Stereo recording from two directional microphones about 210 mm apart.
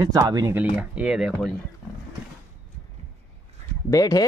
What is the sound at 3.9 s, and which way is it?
Speech, 15° left (ahead or behind).